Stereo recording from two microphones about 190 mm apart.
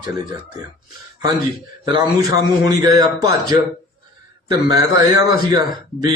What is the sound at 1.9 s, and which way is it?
A man's voice, 20° right (ahead or behind).